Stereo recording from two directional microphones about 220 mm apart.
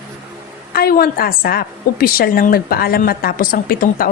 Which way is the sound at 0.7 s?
45° left (ahead or behind).